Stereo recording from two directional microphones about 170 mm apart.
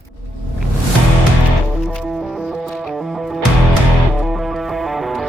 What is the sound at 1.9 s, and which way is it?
Music, centre (ahead or behind).